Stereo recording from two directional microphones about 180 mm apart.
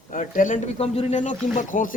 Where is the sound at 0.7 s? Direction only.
35° left (ahead or behind).